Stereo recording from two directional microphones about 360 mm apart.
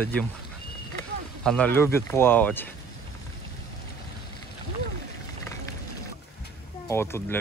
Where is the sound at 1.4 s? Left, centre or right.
Centre.